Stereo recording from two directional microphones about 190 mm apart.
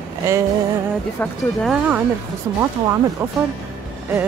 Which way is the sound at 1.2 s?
Centre (ahead or behind).